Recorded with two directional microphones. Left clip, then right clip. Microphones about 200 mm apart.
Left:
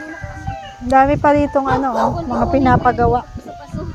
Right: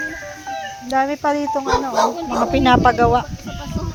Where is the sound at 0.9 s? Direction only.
35° left (ahead or behind).